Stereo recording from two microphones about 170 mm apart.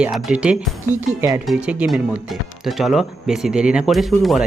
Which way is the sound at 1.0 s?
15° right (ahead or behind).